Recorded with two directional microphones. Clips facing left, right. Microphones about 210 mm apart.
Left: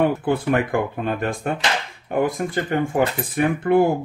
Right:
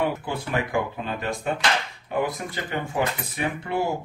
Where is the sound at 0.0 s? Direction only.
55° left (ahead or behind).